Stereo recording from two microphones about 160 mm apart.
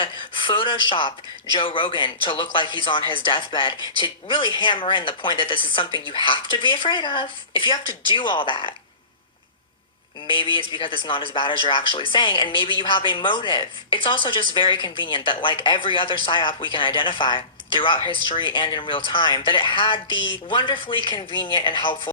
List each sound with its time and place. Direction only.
0.0 s speech: 30° left (ahead or behind)
10.2 s speech: 30° left (ahead or behind)